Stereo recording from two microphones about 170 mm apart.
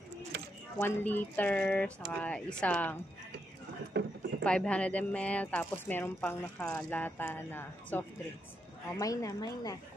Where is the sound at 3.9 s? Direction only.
90° right.